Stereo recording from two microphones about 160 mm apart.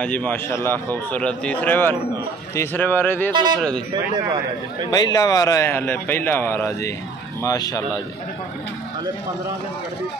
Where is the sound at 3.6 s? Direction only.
5° left (ahead or behind).